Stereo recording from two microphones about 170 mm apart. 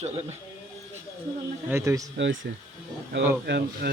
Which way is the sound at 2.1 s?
90° right.